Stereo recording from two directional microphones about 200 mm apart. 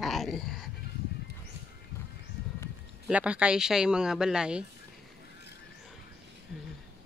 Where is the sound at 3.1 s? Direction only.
5° right (ahead or behind).